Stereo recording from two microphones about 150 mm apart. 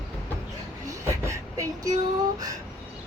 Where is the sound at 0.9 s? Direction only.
20° right (ahead or behind).